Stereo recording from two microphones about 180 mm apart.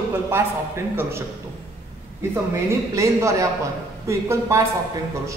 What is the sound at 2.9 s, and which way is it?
Speech, 15° right (ahead or behind).